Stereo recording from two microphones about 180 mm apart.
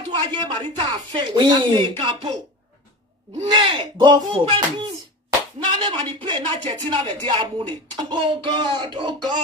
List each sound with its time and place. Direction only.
0.1 s speech: 25° right (ahead or behind)
3.3 s speech: 30° right (ahead or behind)
5.7 s speech: 30° right (ahead or behind)